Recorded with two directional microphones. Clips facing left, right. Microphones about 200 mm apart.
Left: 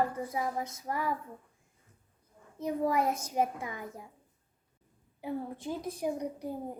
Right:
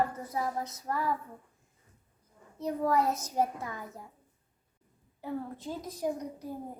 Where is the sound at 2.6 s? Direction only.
15° left (ahead or behind).